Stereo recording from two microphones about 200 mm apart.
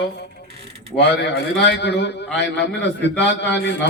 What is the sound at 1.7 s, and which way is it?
A man's voice, 60° left (ahead or behind).